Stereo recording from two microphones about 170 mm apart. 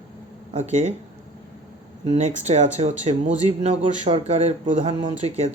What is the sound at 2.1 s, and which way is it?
Speech, 40° right (ahead or behind).